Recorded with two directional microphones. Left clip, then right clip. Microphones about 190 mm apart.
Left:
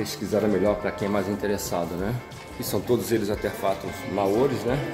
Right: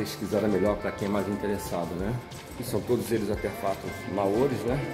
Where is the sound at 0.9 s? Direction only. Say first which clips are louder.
Left 3 dB; 15° left (ahead or behind).